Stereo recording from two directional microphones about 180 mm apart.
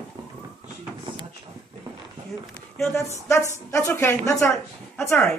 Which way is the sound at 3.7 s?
15° left (ahead or behind).